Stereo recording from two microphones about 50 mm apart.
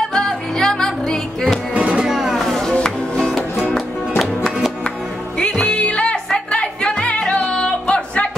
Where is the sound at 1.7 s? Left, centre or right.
Right.